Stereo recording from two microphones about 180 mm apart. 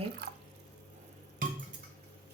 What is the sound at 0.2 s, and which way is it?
Drip, 60° right (ahead or behind).